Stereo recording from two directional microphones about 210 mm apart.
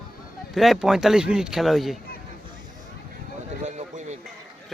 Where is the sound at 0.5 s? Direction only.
Centre (ahead or behind).